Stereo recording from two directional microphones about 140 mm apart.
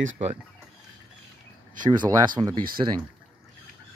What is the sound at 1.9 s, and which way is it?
Speech, 25° right (ahead or behind).